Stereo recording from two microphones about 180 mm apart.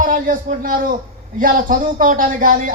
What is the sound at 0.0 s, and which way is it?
A man's voice, 45° right (ahead or behind).